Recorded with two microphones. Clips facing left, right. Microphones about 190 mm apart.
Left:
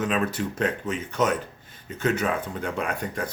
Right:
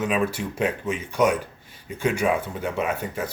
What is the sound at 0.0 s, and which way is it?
Speech, 10° right (ahead or behind).